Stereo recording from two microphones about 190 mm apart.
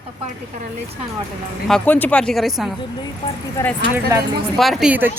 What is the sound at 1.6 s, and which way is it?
Speech, 5° left (ahead or behind).